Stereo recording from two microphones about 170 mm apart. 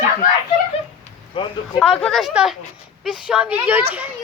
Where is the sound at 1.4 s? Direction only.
30° left (ahead or behind).